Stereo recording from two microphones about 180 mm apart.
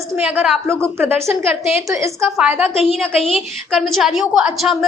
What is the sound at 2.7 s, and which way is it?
Speech, 30° left (ahead or behind).